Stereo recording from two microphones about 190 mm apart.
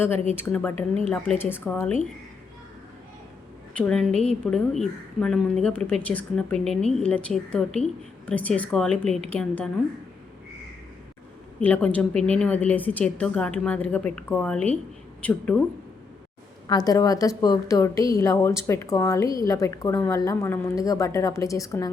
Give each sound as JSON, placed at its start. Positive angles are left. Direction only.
{"t": 0.4, "sound": "a woman's voice", "side_deg": 10}
{"t": 3.8, "sound": "a woman's voice", "side_deg": 5}
{"t": 11.6, "sound": "a woman's voice", "side_deg": 5}
{"t": 16.6, "sound": "a woman's voice", "side_deg": 20}